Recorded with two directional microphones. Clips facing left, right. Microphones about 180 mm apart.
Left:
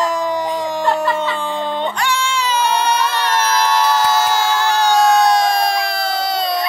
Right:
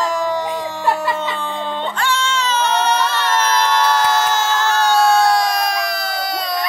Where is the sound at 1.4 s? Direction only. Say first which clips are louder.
Left 3 dB; 15° left (ahead or behind).